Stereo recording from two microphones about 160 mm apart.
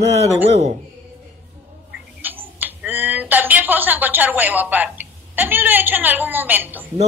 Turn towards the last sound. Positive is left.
turn(degrees=-10)  # may be behind; listen again after turning